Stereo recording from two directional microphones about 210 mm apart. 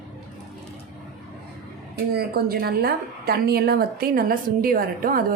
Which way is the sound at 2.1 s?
45° right (ahead or behind).